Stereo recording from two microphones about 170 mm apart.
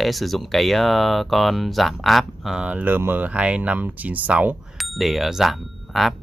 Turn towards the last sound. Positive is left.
turn(degrees=0)  # may be behind; listen again after turning